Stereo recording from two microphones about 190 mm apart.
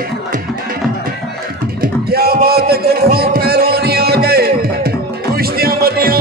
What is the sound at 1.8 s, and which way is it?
Music, 55° right (ahead or behind).